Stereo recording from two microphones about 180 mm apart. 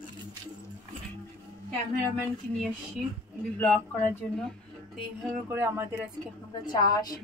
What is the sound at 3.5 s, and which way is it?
Speech, 5° left (ahead or behind).